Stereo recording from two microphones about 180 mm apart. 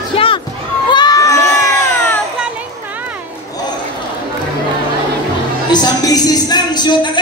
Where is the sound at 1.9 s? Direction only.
10° left (ahead or behind).